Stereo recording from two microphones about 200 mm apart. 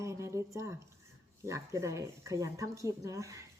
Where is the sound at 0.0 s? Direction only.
15° right (ahead or behind).